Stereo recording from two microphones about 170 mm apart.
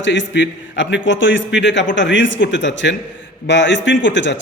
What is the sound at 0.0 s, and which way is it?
A man's voice, 90° left.